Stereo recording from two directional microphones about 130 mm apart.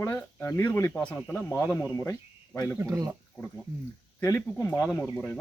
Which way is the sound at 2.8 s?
20° right (ahead or behind).